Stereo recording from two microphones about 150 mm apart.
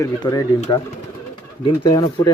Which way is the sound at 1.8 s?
25° left (ahead or behind).